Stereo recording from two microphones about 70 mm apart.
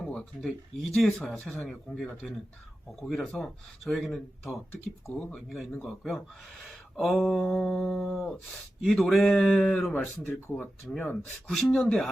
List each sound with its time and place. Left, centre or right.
0.1 s speech: centre
1.4 s speech: centre
3.1 s speech: centre
9.9 s speech: left; by 12.1 s centre